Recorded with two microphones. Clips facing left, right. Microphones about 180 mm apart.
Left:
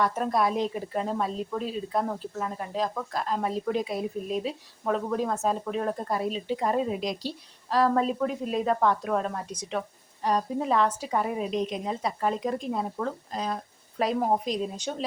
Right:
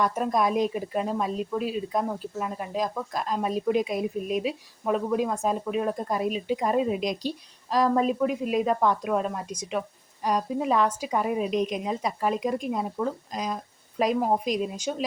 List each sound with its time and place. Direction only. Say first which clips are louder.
0.0 s speech: right 1 dB; 15° right (ahead or behind)